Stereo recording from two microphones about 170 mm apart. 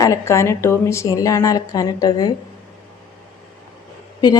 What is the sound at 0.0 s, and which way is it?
A woman's voice, 15° left (ahead or behind).